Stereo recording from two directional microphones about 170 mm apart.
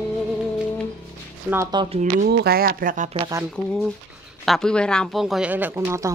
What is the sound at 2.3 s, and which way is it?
Speech, 65° right (ahead or behind).